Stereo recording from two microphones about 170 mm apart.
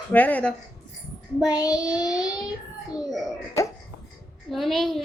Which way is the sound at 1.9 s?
20° left (ahead or behind).